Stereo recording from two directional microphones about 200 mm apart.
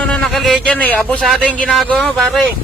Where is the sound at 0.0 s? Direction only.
5° left (ahead or behind).